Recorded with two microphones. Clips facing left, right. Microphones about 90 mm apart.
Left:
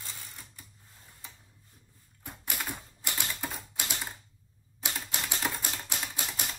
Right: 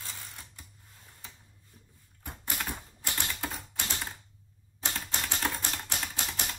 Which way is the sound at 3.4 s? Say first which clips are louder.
Right 1 dB; 15° left (ahead or behind).